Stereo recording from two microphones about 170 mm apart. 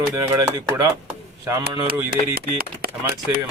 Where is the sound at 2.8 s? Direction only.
60° right (ahead or behind).